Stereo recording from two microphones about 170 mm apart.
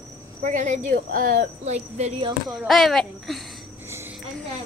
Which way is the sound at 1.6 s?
40° right (ahead or behind).